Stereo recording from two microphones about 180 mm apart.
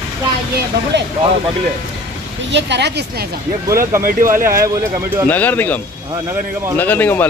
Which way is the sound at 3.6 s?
15° right (ahead or behind).